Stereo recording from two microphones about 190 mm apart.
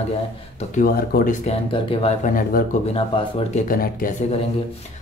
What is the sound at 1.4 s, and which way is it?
Speech, 30° left (ahead or behind).